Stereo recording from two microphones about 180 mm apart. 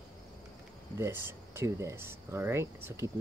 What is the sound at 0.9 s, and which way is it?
Speech, 15° right (ahead or behind).